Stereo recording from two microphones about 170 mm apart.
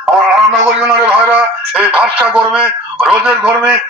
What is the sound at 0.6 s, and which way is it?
A man's voice, 5° right (ahead or behind).